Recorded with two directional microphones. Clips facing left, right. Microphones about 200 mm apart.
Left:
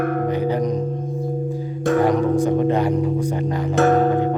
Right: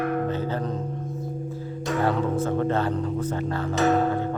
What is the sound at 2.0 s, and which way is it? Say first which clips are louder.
Speech: left 5 dB; 15° left (ahead or behind).